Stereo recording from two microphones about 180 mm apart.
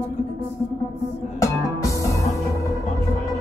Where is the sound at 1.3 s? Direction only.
15° left (ahead or behind).